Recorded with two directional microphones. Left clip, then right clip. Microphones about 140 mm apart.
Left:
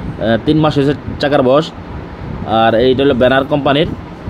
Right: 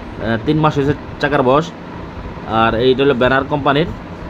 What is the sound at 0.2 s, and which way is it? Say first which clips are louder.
Speech: left 3 dB; 35° left (ahead or behind).